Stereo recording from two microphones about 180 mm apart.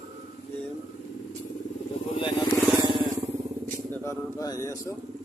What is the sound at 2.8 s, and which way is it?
Vehicle, 25° right (ahead or behind).